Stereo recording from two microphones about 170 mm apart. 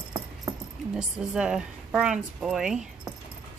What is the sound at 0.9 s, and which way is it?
A woman's voice, 5° right (ahead or behind).